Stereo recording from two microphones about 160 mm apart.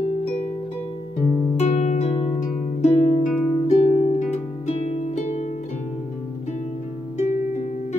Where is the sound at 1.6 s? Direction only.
45° left (ahead or behind).